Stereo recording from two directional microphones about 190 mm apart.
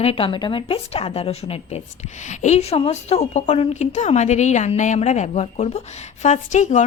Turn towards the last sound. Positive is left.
turn(degrees=40)  # may be behind; listen again after turning